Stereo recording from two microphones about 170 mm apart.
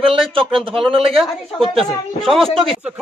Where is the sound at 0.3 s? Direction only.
30° right (ahead or behind).